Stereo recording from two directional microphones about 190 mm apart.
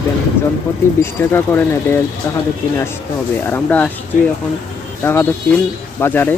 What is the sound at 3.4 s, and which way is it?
Speech, 10° left (ahead or behind).